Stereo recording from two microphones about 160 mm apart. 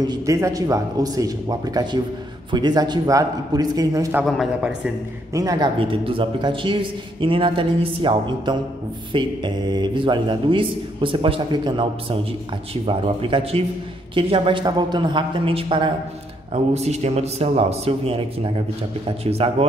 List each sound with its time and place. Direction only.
0.0 s a man's voice: 25° right (ahead or behind)
4.2 s a man's voice: 5° right (ahead or behind)
5.3 s a man's voice: 20° right (ahead or behind)
5.8 s a man's voice: 35° right (ahead or behind)
16.5 s a man's voice: 45° right (ahead or behind)